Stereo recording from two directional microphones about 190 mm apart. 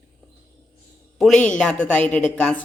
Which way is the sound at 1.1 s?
Centre (ahead or behind).